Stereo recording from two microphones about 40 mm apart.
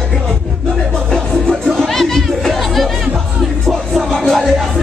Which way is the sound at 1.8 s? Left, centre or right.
Centre.